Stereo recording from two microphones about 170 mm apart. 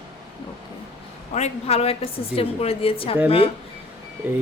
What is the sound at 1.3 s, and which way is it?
A woman's voice, 40° left (ahead or behind).